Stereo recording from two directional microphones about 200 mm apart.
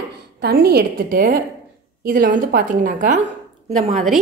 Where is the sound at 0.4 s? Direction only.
50° right (ahead or behind).